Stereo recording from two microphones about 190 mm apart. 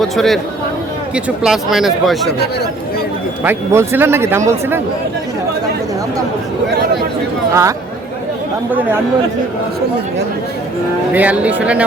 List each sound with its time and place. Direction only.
0.0 s speech: centre (ahead or behind)
3.4 s speech: 15° right (ahead or behind)
7.5 s speech: 15° right (ahead or behind)
11.1 s speech: 10° right (ahead or behind)